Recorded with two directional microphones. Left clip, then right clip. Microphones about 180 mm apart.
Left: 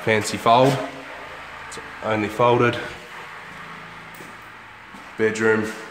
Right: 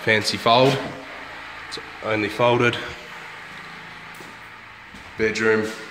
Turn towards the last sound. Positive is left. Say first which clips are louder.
# even
turn(degrees=10)  # may be behind; listen again after turning